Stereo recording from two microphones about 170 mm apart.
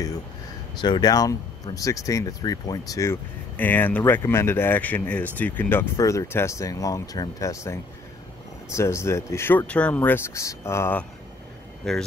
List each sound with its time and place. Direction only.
0.7 s speech: 25° left (ahead or behind)
11.9 s speech: centre (ahead or behind)